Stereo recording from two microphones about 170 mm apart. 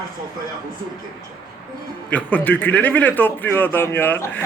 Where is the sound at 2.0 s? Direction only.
10° left (ahead or behind).